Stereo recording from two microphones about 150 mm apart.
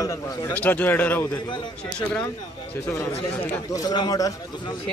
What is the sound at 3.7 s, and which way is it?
Speech, 25° left (ahead or behind).